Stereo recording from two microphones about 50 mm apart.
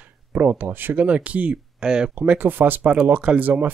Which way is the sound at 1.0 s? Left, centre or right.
Right.